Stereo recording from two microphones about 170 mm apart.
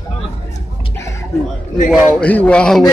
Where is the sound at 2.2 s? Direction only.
5° left (ahead or behind).